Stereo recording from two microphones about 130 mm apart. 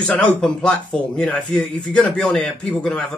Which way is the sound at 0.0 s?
5° left (ahead or behind).